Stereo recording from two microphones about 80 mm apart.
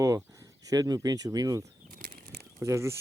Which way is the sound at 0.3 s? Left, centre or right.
Right.